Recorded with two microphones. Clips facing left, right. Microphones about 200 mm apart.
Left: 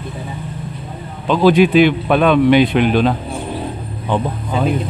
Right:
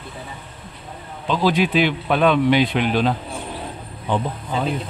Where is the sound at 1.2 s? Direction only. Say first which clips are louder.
Left 8 dB; 60° left (ahead or behind).